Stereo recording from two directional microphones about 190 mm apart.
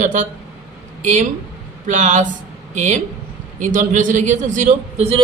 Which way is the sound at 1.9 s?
40° right (ahead or behind).